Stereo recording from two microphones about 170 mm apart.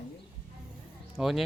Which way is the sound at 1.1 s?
Centre (ahead or behind).